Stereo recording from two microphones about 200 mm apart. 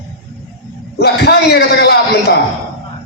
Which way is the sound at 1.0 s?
55° left (ahead or behind).